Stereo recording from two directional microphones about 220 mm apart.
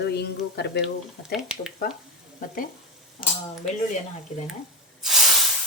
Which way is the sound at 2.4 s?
40° left (ahead or behind).